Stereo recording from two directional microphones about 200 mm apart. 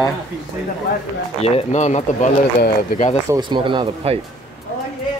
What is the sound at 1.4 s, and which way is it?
Speech, 30° left (ahead or behind).